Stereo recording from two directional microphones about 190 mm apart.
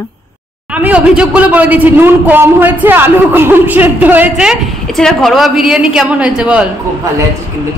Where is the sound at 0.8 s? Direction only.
5° right (ahead or behind).